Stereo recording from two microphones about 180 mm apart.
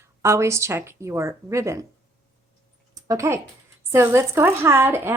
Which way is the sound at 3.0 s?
20° right (ahead or behind).